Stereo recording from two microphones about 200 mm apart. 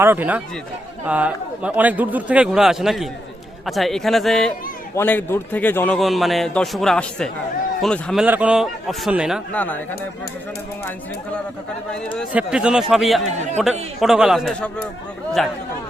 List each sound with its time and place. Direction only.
0.0 s a man's voice: 10° right (ahead or behind)
8.2 s a man's voice: 5° right (ahead or behind)
12.3 s a man's voice: 5° right (ahead or behind)
13.3 s speech: 35° right (ahead or behind)
14.0 s a man's voice: centre (ahead or behind)